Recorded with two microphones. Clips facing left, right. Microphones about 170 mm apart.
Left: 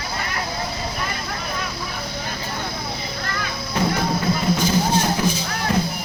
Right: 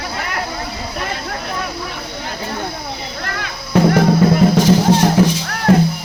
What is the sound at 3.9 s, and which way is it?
Music, 75° right (ahead or behind).